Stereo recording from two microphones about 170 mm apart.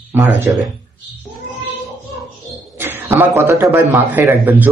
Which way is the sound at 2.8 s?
10° right (ahead or behind).